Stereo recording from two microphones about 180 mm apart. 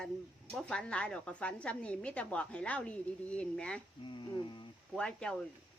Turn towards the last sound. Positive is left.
turn(degrees=5)  # may be behind; listen again after turning